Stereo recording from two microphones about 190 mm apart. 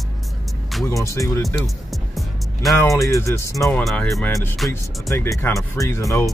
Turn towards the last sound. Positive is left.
turn(degrees=15)  # may be behind; listen again after turning